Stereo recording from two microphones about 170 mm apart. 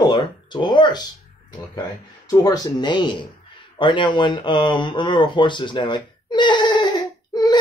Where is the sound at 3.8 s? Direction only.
30° left (ahead or behind).